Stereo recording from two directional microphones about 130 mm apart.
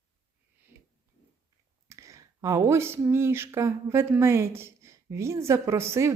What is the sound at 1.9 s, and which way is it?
Speech, 25° right (ahead or behind).